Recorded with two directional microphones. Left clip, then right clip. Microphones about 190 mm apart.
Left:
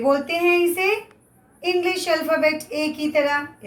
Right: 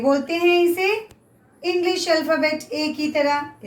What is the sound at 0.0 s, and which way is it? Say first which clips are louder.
Speech: even; 20° left (ahead or behind).